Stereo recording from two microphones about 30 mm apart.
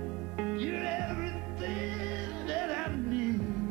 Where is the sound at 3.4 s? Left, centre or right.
Centre.